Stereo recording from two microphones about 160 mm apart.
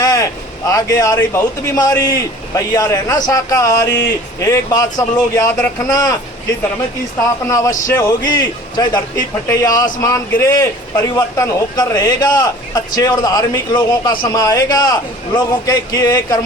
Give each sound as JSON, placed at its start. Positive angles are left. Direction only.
{"t": 0.0, "sound": "a sound", "side_deg": 20}
{"t": 0.7, "sound": "a man's voice", "side_deg": 20}
{"t": 7.4, "sound": "a man's voice", "side_deg": 20}